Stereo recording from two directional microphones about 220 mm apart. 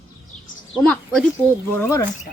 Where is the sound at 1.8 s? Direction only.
15° left (ahead or behind).